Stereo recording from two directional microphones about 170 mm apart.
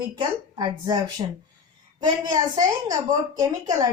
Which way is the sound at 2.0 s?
25° right (ahead or behind).